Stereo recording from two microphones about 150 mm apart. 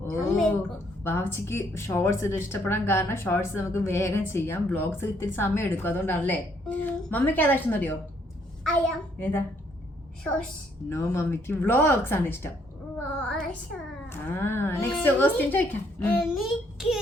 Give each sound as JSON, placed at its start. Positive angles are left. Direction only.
{"t": 0.2, "sound": "a woman's voice", "side_deg": 0}
{"t": 1.0, "sound": "speech", "side_deg": 15}
{"t": 10.8, "sound": "speech", "side_deg": 15}
{"t": 13.1, "sound": "child singing", "side_deg": 5}
{"t": 14.1, "sound": "speech", "side_deg": 15}
{"t": 16.3, "sound": "a child's voice", "side_deg": 0}